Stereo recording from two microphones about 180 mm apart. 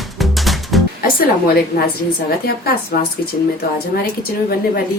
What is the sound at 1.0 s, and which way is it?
Music, 55° left (ahead or behind).